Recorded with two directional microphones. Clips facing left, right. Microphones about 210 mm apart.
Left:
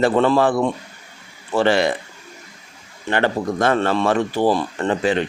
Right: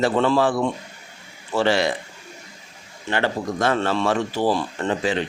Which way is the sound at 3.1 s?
55° left (ahead or behind).